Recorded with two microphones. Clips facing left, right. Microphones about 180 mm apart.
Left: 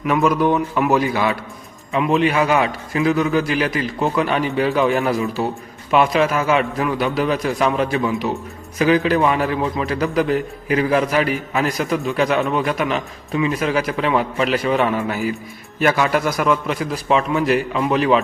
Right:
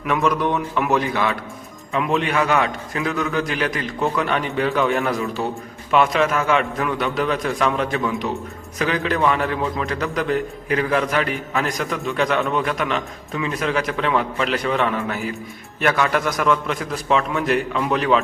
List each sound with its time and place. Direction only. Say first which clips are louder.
0.1 s a man's voice: left 3 dB; centre (ahead or behind)
2.4 s a man's voice: left 2 dB; 15° left (ahead or behind)
2.9 s a man's voice: left 8 dB; 5° left (ahead or behind)
5.4 s a man's voice: left 3 dB; 20° left (ahead or behind)
5.9 s a man's voice: left 2 dB; 5° left (ahead or behind)